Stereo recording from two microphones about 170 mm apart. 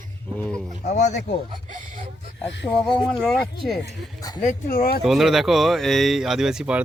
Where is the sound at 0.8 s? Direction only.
45° left (ahead or behind).